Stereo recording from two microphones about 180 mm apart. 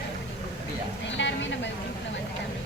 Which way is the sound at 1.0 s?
90° left.